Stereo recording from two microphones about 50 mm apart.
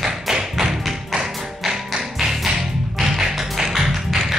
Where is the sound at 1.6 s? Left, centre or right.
Centre.